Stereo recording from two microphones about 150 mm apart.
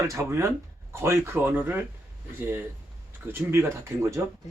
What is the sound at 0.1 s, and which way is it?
Speech, 20° right (ahead or behind).